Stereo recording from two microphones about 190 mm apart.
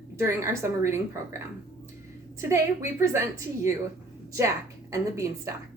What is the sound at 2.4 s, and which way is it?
Speech, 15° right (ahead or behind).